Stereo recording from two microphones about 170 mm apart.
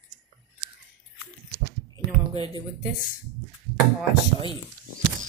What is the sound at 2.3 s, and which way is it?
Speech, 25° left (ahead or behind).